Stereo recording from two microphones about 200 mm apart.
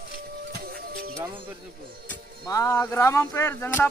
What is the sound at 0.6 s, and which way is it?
Music, 50° right (ahead or behind).